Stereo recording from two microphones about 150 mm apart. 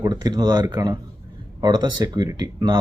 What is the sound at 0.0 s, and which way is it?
Speech, 25° right (ahead or behind).